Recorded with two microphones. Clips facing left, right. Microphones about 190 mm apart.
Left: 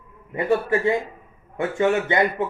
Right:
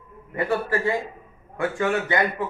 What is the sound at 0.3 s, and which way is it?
Speech, 20° left (ahead or behind).